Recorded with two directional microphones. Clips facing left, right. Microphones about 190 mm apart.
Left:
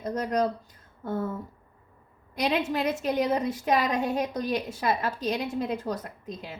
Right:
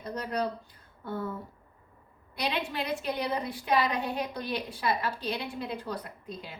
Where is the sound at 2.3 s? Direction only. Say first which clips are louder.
Left 6 dB; 45° left (ahead or behind).